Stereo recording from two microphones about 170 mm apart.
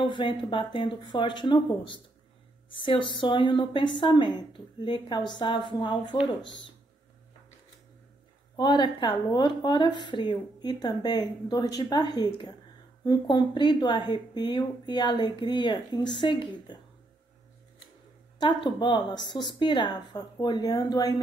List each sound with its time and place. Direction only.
0.0 s a woman's voice: 30° left (ahead or behind)
2.7 s a woman's voice: 30° left (ahead or behind)
8.5 s a woman's voice: 25° left (ahead or behind)
18.4 s a woman's voice: 30° left (ahead or behind)